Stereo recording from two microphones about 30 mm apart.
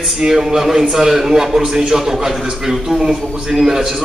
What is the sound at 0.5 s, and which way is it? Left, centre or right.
A man's voice, centre.